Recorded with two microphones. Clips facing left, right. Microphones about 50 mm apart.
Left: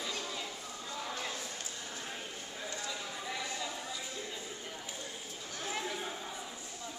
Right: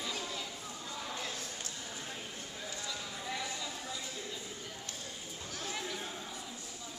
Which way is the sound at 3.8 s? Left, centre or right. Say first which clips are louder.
Even; centre.